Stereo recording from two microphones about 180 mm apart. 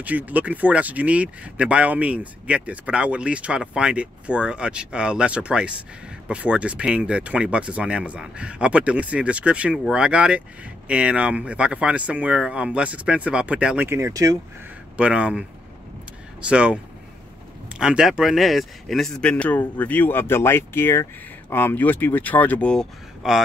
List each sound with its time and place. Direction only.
0.0 s speech: 10° right (ahead or behind)
15.0 s a man's voice: 5° right (ahead or behind)